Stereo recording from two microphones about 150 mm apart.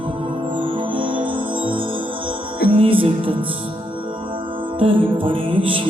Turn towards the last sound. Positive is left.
turn(degrees=-35)  # may be behind; listen again after turning